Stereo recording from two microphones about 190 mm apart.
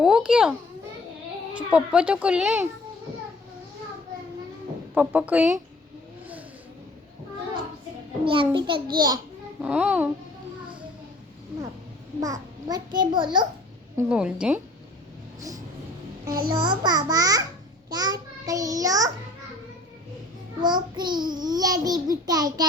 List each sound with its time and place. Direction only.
0.0 s a child's voice: 5° right (ahead or behind)
1.5 s a child's voice: 5° right (ahead or behind)
4.9 s a child's voice: 10° right (ahead or behind)
8.2 s a child's voice: 25° right (ahead or behind)
9.6 s a child's voice: 5° right (ahead or behind)
12.2 s a child's voice: 20° right (ahead or behind)
13.9 s a child's voice: 5° right (ahead or behind)
16.5 s a child's voice: 20° right (ahead or behind)
20.6 s a child's voice: 25° right (ahead or behind)